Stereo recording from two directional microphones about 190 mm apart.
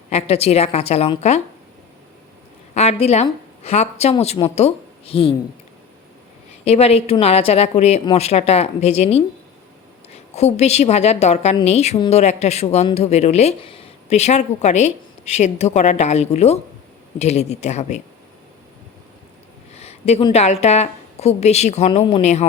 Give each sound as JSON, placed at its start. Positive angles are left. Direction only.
{"t": 0.1, "sound": "speech", "side_deg": 30}
{"t": 2.7, "sound": "speech", "side_deg": 35}
{"t": 6.7, "sound": "a woman's voice", "side_deg": 35}
{"t": 19.7, "sound": "a sound", "side_deg": 35}
{"t": 20.3, "sound": "speech", "side_deg": 35}